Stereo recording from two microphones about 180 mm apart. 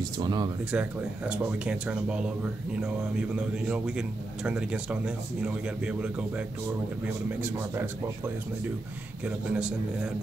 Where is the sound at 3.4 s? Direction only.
5° right (ahead or behind).